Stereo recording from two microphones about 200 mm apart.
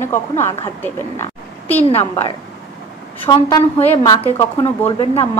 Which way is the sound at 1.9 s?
30° left (ahead or behind).